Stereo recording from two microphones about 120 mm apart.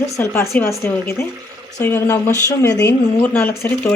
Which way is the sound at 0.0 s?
20° left (ahead or behind).